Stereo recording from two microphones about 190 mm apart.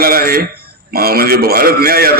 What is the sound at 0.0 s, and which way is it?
A man's voice, 50° right (ahead or behind).